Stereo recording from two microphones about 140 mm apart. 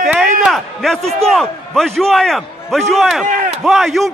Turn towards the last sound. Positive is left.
turn(degrees=0)  # may be behind; listen again after turning